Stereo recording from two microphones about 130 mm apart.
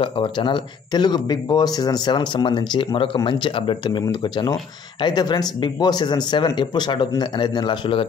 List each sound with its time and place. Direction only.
0.0 s speech: 40° left (ahead or behind)